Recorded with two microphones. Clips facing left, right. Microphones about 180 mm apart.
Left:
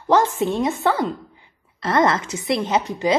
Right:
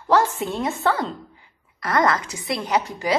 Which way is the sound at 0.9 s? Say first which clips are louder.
Left 3 dB; centre (ahead or behind).